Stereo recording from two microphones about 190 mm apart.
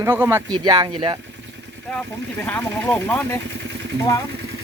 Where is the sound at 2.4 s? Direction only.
10° left (ahead or behind).